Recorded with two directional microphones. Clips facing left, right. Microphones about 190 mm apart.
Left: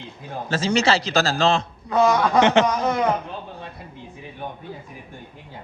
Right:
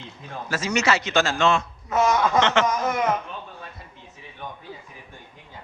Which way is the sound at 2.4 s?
20° left (ahead or behind).